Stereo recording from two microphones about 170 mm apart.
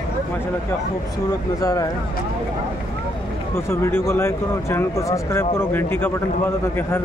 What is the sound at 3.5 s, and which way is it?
Speech, 15° left (ahead or behind).